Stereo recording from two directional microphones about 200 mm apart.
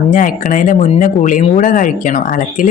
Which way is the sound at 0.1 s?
40° left (ahead or behind).